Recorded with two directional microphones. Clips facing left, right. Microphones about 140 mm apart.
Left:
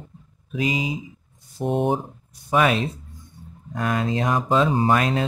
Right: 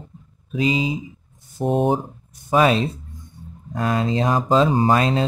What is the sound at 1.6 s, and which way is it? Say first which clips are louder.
Speech: right 3 dB; 40° right (ahead or behind).